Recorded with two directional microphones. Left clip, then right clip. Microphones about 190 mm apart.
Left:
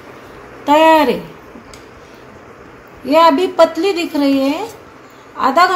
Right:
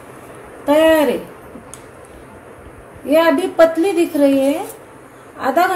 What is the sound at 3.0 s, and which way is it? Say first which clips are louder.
A woman's voice: left 3 dB; 50° left (ahead or behind).